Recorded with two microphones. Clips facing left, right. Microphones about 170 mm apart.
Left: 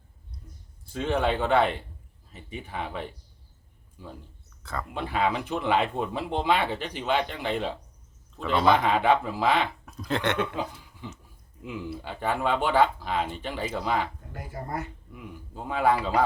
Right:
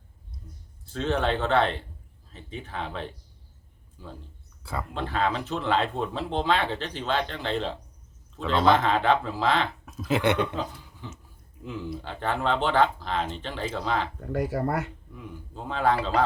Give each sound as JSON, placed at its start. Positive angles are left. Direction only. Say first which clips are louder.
{"t": 0.9, "sound": "speech", "louder": "even", "side_deg": 10}
{"t": 4.6, "sound": "speech", "louder": "right 1 dB", "side_deg": -10}
{"t": 4.9, "sound": "a man's voice", "louder": "left 1 dB", "side_deg": 10}
{"t": 9.8, "sound": "speech", "louder": "right 4 dB", "side_deg": -5}
{"t": 10.5, "sound": "speech", "louder": "even", "side_deg": 15}
{"t": 14.2, "sound": "speech", "louder": "right 12 dB", "side_deg": -75}
{"t": 15.1, "sound": "speech", "louder": "right 1 dB", "side_deg": 10}